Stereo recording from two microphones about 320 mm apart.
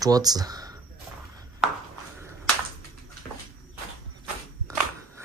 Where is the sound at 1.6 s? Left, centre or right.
Centre.